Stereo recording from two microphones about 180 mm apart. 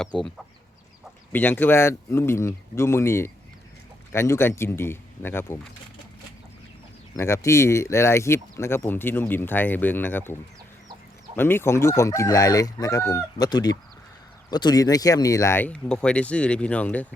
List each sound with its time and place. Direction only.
0.2 s speech: centre (ahead or behind)
7.2 s speech: 15° left (ahead or behind)
11.3 s speech: 10° left (ahead or behind)